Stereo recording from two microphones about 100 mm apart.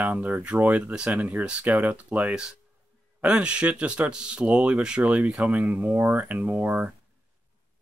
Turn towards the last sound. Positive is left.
turn(degrees=-15)  # may be behind; listen again after turning